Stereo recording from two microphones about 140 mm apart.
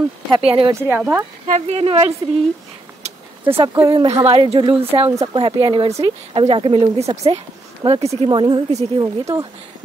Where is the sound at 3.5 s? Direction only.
35° right (ahead or behind).